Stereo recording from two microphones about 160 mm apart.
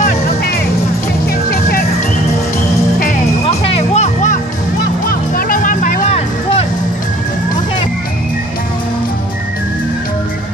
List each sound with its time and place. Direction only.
3.4 s music: 40° left (ahead or behind)
5.3 s music: 60° left (ahead or behind)